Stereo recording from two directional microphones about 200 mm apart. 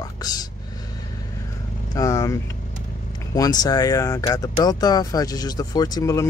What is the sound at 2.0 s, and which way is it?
Speech, 15° left (ahead or behind).